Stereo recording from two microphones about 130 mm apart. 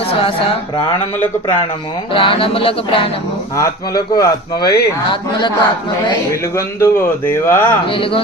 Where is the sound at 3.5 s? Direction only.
25° left (ahead or behind).